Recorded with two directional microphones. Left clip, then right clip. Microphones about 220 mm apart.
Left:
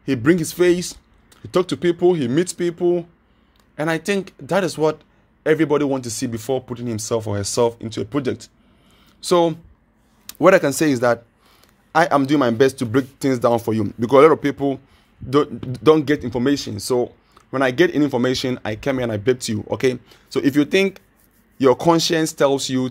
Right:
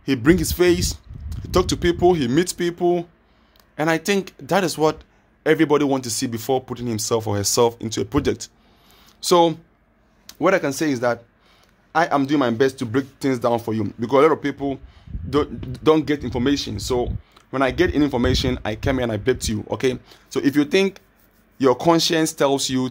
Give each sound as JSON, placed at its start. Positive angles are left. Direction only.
{"t": 0.0, "sound": "speech", "side_deg": 0}
{"t": 10.2, "sound": "speech", "side_deg": 15}